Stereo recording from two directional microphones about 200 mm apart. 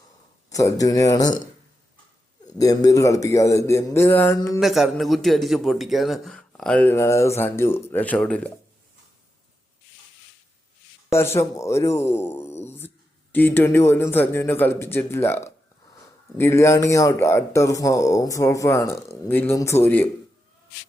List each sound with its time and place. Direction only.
0.5 s speech: 15° left (ahead or behind)
2.5 s speech: 20° left (ahead or behind)
4.6 s speech: centre (ahead or behind)
11.1 s speech: 10° left (ahead or behind)